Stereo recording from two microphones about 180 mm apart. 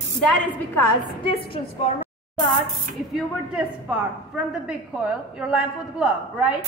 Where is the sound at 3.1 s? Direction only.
5° right (ahead or behind).